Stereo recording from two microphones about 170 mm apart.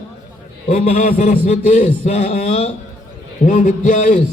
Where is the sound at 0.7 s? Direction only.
45° left (ahead or behind).